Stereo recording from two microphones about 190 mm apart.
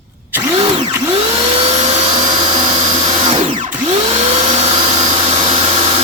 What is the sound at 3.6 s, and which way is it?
Vacuum cleaner, 30° right (ahead or behind).